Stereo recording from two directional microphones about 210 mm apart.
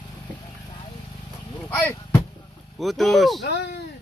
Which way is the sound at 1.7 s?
10° left (ahead or behind).